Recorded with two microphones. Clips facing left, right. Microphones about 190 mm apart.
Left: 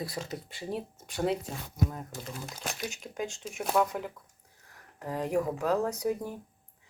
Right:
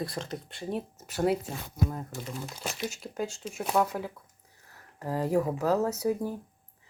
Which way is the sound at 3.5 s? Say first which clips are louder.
Even; 5° right (ahead or behind).